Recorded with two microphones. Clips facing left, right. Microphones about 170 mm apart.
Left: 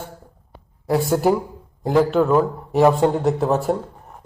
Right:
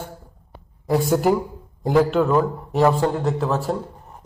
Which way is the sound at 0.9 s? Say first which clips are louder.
Even; 5° left (ahead or behind).